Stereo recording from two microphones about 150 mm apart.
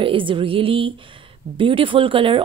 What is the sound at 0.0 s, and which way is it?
Speech, 35° right (ahead or behind).